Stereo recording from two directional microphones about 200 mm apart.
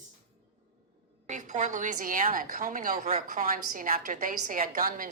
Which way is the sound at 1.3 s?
40° right (ahead or behind).